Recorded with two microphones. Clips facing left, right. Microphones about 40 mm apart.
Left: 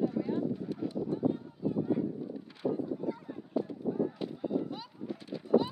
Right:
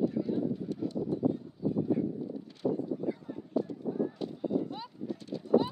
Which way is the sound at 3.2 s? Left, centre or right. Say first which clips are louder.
Right 1 dB; centre.